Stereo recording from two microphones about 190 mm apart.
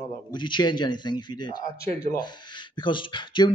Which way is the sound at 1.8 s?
55° left (ahead or behind).